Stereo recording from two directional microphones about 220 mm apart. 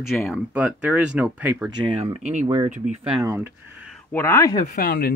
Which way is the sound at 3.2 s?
10° right (ahead or behind).